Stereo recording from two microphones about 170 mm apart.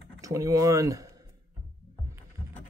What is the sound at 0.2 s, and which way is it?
Speech, 20° right (ahead or behind).